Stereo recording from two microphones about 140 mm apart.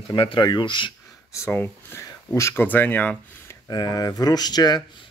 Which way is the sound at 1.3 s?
15° left (ahead or behind).